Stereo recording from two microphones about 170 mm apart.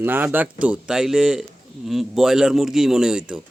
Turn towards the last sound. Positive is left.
turn(degrees=-5)  # may be behind; listen again after turning